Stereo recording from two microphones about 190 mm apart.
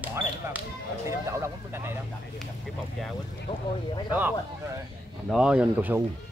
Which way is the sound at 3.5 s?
30° left (ahead or behind).